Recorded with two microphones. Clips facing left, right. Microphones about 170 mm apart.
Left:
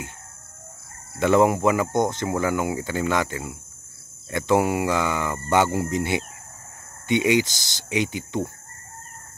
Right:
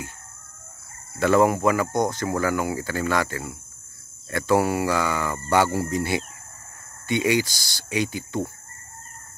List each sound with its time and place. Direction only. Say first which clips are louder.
1.2 s speech: left 1 dB; 20° left (ahead or behind)